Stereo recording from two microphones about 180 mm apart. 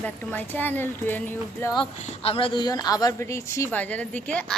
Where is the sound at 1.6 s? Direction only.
25° left (ahead or behind).